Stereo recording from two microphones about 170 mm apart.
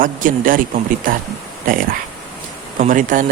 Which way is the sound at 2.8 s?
50° right (ahead or behind).